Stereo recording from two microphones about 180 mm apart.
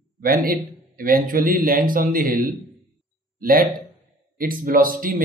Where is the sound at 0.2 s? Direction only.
55° right (ahead or behind).